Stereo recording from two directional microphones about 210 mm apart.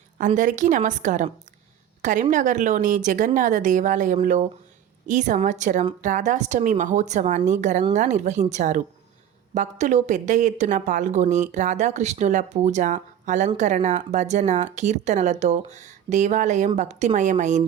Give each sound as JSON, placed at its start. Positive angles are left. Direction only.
{"t": 0.2, "sound": "speech", "side_deg": -35}